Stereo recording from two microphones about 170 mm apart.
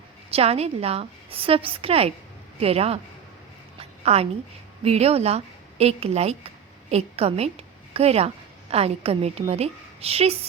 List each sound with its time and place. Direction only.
0.3 s a woman's voice: 35° right (ahead or behind)
3.8 s a sound: 35° right (ahead or behind)
4.8 s a woman's voice: 35° right (ahead or behind)